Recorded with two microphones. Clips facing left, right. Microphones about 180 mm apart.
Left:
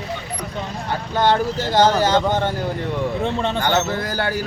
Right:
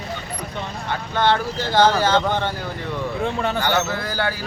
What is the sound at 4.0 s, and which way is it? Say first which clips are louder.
Speech: left 2 dB; 45° left (ahead or behind).